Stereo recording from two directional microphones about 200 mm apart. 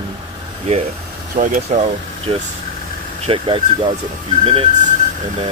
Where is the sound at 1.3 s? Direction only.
40° right (ahead or behind).